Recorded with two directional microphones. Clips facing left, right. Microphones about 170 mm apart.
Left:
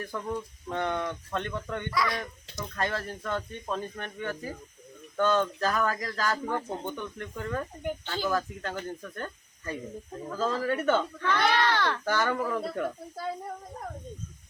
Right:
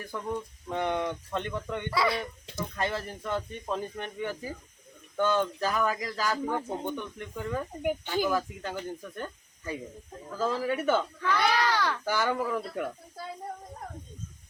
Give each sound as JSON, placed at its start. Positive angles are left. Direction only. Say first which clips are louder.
{"t": 0.1, "sound": "speech", "louder": "right 2 dB", "side_deg": -10}
{"t": 1.9, "sound": "speech", "louder": "right 2 dB", "side_deg": -30}
{"t": 2.7, "sound": "speech", "louder": "left 1 dB", "side_deg": -15}